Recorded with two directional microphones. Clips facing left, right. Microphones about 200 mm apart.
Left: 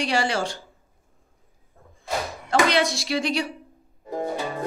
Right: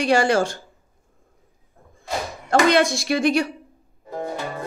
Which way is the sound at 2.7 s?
50° right (ahead or behind).